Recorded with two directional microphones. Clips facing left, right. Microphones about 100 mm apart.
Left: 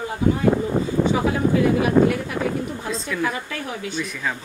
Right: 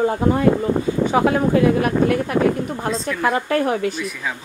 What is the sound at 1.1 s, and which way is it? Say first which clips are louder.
Speech: right 6 dB; 60° right (ahead or behind).